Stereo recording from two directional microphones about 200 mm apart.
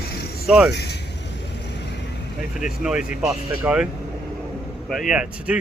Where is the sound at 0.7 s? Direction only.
55° left (ahead or behind).